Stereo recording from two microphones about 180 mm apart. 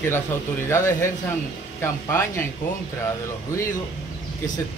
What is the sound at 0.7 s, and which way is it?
Speech, 15° left (ahead or behind).